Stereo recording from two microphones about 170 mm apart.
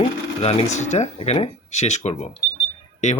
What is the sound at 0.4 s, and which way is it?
Speech, 40° left (ahead or behind).